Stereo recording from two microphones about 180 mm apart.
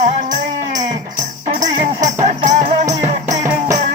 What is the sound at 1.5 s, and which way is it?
Music, 40° right (ahead or behind).